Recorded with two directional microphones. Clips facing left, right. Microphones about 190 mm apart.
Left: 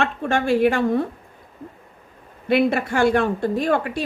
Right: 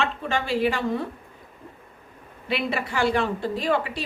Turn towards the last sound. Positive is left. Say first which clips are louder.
# left 4 dB
turn(degrees=50)  # may be behind; listen again after turning